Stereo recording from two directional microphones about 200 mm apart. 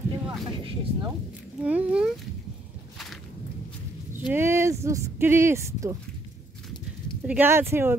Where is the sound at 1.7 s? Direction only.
5° right (ahead or behind).